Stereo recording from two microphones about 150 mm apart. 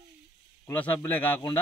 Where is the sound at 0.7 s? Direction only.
10° left (ahead or behind).